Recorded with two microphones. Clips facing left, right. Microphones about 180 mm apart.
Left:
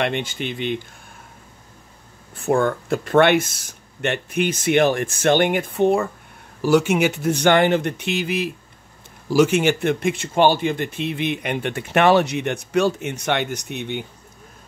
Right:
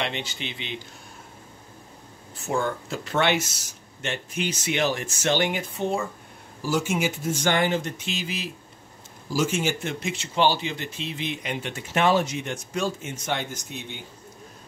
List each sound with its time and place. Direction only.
0.0 s speech: 50° left (ahead or behind)
2.3 s speech: 55° left (ahead or behind)